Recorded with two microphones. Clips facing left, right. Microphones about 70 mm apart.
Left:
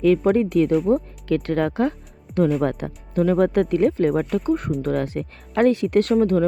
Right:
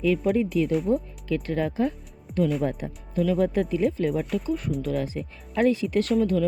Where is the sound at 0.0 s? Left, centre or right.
Left.